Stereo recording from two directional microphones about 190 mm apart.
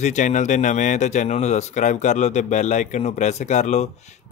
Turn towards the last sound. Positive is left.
turn(degrees=35)  # may be behind; listen again after turning